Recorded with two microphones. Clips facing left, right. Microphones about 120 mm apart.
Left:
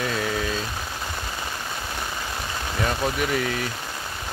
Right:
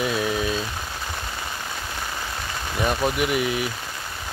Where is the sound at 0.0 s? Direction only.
15° right (ahead or behind).